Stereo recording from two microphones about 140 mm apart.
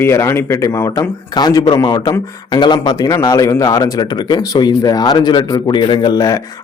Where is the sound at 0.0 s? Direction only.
20° left (ahead or behind).